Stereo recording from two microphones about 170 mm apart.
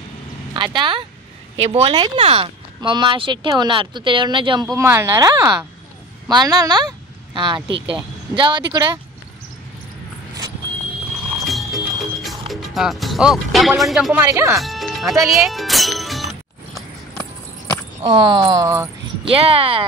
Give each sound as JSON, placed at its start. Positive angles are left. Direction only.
{"t": 0.7, "sound": "speech", "side_deg": -30}
{"t": 4.7, "sound": "speech", "side_deg": -15}
{"t": 11.4, "sound": "music", "side_deg": 0}
{"t": 14.2, "sound": "speech", "side_deg": -15}
{"t": 14.6, "sound": "music", "side_deg": 0}
{"t": 15.2, "sound": "speech", "side_deg": 0}
{"t": 18.0, "sound": "speech", "side_deg": -30}
{"t": 19.2, "sound": "speech", "side_deg": -35}